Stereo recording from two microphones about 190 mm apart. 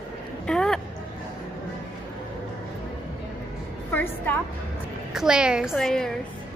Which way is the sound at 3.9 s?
10° left (ahead or behind).